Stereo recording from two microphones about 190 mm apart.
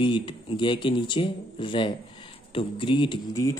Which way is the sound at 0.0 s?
25° left (ahead or behind).